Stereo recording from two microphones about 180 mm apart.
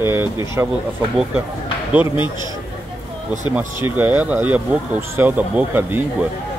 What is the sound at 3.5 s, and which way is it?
A man's voice, 10° right (ahead or behind).